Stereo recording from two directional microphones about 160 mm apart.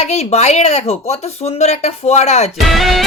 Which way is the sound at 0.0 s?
40° left (ahead or behind).